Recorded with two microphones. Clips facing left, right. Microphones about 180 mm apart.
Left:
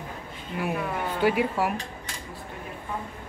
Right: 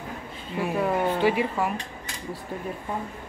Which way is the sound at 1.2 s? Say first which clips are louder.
Even; centre (ahead or behind).